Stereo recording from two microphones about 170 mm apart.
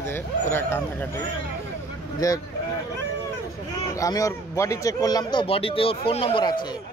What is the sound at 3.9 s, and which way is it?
Speech, 20° left (ahead or behind).